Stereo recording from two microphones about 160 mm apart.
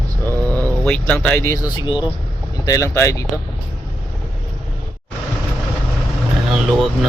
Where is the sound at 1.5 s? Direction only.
30° left (ahead or behind).